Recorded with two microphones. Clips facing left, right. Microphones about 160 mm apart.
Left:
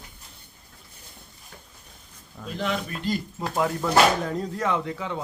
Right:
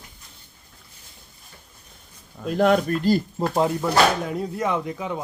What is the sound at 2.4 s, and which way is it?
Speech, 50° right (ahead or behind).